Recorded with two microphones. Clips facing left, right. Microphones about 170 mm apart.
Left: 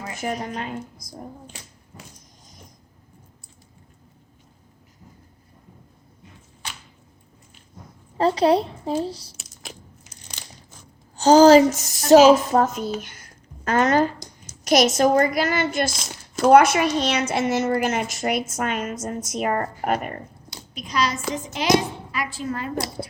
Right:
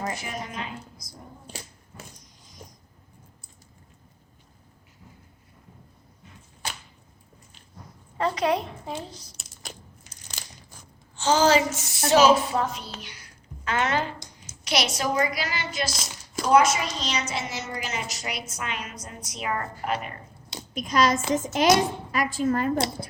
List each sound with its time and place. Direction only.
0.2 s a woman's voice: 50° left (ahead or behind)
8.2 s speech: 30° left (ahead or behind)
9.3 s a sound: centre (ahead or behind)
11.2 s speech: 40° left (ahead or behind)
13.0 s a sound: 50° left (ahead or behind)
14.6 s a woman's voice: 45° left (ahead or behind)
20.7 s a woman's voice: 45° right (ahead or behind)